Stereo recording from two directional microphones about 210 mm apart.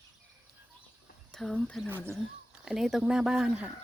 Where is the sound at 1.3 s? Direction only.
5° left (ahead or behind).